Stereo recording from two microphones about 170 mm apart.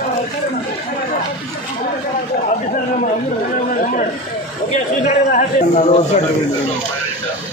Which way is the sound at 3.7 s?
50° left (ahead or behind).